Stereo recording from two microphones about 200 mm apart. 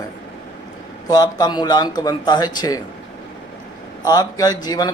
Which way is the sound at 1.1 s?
20° left (ahead or behind).